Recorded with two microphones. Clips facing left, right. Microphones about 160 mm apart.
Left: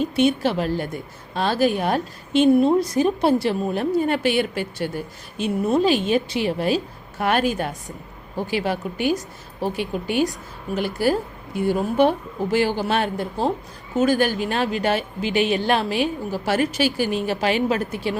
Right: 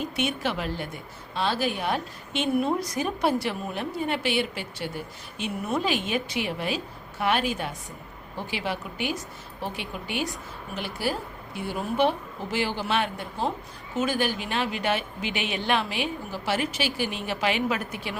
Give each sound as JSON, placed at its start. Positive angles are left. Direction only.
{"t": 0.0, "sound": "a woman's voice", "side_deg": 30}
{"t": 5.4, "sound": "a woman's voice", "side_deg": 30}